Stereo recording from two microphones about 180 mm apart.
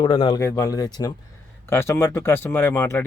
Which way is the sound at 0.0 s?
30° left (ahead or behind).